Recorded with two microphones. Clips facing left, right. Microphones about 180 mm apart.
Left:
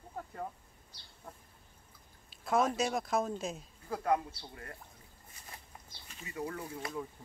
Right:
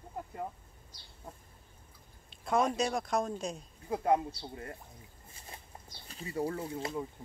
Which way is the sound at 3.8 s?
25° right (ahead or behind).